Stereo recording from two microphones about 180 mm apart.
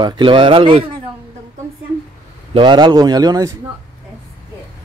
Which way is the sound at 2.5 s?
25° right (ahead or behind).